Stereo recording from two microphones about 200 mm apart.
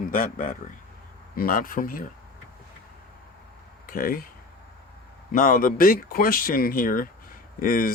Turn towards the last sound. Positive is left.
turn(degrees=45)  # may be behind; listen again after turning